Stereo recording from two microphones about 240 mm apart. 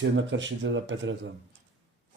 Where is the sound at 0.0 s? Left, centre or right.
Right.